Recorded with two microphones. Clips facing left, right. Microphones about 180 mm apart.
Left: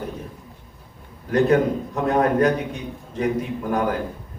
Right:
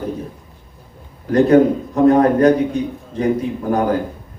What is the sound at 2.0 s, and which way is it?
Speech, 35° right (ahead or behind).